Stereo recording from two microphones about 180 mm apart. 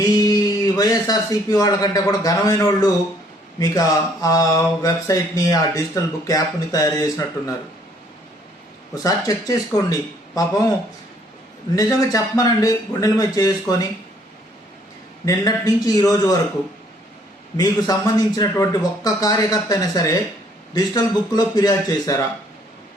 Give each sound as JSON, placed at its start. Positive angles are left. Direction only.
{"t": 0.0, "sound": "speech", "side_deg": 20}
{"t": 9.0, "sound": "speech", "side_deg": 20}
{"t": 11.7, "sound": "speech", "side_deg": 20}
{"t": 15.2, "sound": "speech", "side_deg": 20}
{"t": 17.6, "sound": "speech", "side_deg": 20}